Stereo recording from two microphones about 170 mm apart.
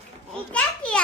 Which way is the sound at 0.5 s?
5° left (ahead or behind).